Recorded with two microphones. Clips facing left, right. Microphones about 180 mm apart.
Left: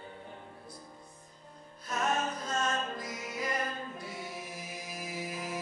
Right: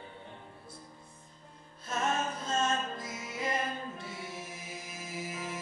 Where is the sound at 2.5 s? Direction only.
25° right (ahead or behind).